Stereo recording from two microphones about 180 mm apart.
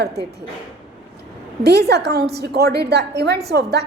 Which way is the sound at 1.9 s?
65° right (ahead or behind).